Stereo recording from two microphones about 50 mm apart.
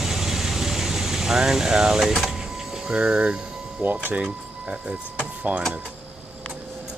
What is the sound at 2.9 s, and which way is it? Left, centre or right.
Speech, right.